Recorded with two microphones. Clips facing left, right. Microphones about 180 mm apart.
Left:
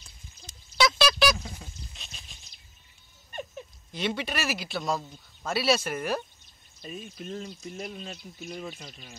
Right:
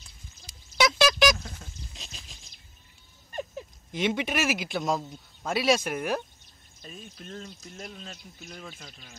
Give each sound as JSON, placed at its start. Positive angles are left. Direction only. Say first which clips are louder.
{"t": 0.7, "sound": "a sound", "louder": "right 1 dB", "side_deg": -15}
{"t": 3.9, "sound": "speech", "louder": "right 3 dB", "side_deg": -15}
{"t": 6.8, "sound": "speech", "louder": "left 5 dB", "side_deg": 5}